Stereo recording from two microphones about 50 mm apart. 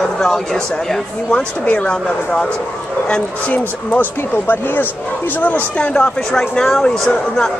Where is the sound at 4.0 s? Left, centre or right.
Left.